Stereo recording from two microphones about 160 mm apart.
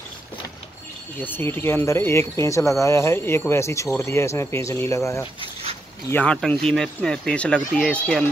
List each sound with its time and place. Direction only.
1.2 s speech: 15° left (ahead or behind)